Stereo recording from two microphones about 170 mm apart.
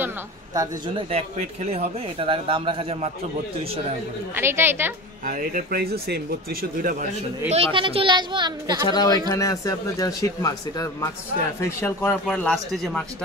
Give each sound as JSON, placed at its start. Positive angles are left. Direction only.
{"t": 0.6, "sound": "speech", "side_deg": -35}
{"t": 4.4, "sound": "a woman's voice", "side_deg": -15}
{"t": 5.2, "sound": "speech", "side_deg": -50}
{"t": 7.5, "sound": "a woman's voice", "side_deg": -30}
{"t": 8.8, "sound": "speech", "side_deg": 25}